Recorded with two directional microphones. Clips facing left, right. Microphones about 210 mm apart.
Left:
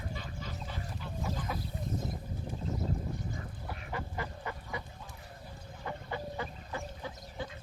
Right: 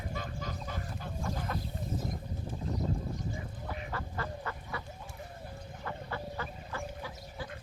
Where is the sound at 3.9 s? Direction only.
15° left (ahead or behind).